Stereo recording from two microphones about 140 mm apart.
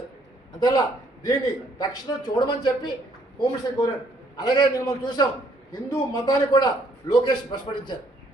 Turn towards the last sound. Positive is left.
turn(degrees=30)  # may be behind; listen again after turning